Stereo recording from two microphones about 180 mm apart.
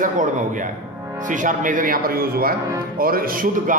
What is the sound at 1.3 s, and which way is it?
A man's voice, 45° right (ahead or behind).